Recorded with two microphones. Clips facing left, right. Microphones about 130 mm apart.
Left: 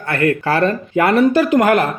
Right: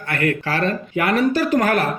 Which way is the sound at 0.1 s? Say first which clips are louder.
Left 5 dB; 30° left (ahead or behind).